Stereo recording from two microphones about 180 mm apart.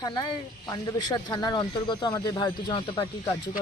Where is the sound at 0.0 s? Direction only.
25° left (ahead or behind).